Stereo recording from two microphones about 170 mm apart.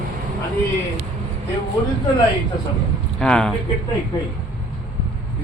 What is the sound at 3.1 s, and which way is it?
Speech, 5° left (ahead or behind).